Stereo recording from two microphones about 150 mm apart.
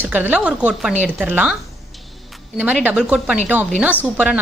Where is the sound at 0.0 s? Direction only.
10° right (ahead or behind).